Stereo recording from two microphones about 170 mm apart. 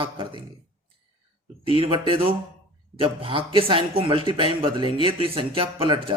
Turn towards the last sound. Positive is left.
turn(degrees=-30)  # may be behind; listen again after turning